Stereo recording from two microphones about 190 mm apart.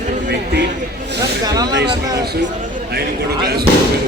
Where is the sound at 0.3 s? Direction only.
60° right (ahead or behind).